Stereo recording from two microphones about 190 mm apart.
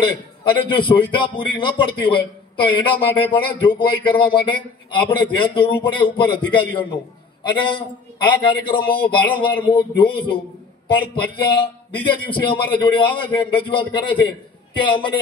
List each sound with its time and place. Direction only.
0.0 s a man's voice: 25° left (ahead or behind)